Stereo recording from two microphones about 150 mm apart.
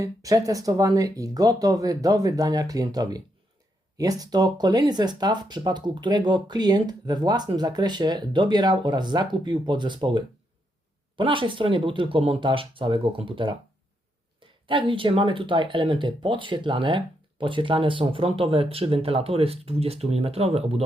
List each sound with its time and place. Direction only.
0.0 s speech: 20° right (ahead or behind)
14.7 s speech: 35° right (ahead or behind)